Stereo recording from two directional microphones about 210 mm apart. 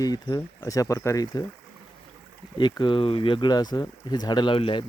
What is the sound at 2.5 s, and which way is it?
Speech, 20° left (ahead or behind).